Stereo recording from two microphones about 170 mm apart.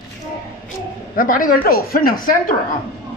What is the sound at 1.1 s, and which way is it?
A woman's voice, 55° left (ahead or behind).